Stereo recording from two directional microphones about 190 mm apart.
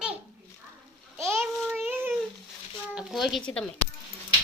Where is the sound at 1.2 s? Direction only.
15° right (ahead or behind).